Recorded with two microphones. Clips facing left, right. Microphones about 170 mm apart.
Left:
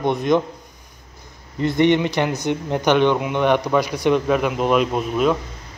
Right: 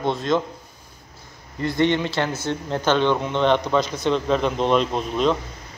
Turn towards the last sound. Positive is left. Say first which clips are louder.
# left 2 dB
turn(degrees=5)  # may be behind; listen again after turning